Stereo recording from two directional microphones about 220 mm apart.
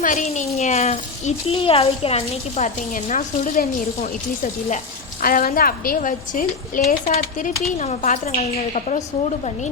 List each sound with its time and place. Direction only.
0.0 s speech: 35° left (ahead or behind)
5.2 s speech: 40° left (ahead or behind)